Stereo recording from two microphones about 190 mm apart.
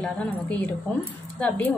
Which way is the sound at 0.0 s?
5° left (ahead or behind).